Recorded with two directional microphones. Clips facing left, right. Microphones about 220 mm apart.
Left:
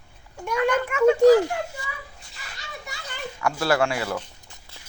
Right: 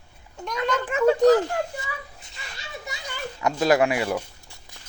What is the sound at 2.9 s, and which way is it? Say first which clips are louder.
Children playing: right 1 dB; 20° right (ahead or behind).